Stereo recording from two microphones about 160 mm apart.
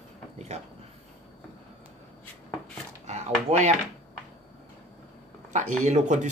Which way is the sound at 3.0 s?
45° right (ahead or behind).